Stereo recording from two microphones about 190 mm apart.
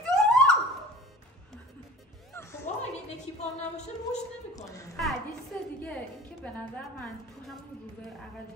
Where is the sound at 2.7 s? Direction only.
35° left (ahead or behind).